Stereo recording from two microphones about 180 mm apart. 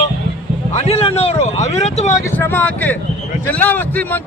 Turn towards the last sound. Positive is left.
turn(degrees=10)  # may be behind; listen again after turning